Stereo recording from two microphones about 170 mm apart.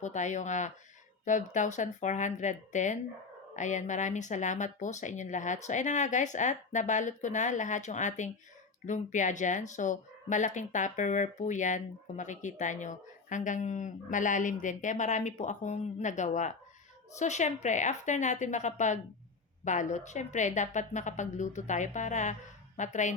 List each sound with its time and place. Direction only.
0.0 s speech: 45° left (ahead or behind)